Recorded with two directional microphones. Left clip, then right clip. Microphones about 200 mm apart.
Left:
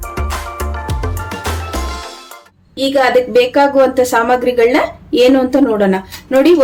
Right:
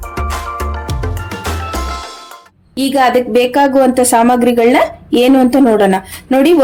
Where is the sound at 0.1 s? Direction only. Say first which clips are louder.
Right 3 dB; centre (ahead or behind).